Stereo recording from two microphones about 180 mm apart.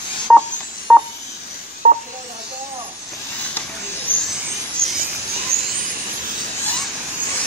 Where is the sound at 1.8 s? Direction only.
40° right (ahead or behind).